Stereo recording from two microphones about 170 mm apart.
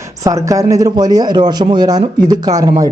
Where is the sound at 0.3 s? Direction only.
20° right (ahead or behind).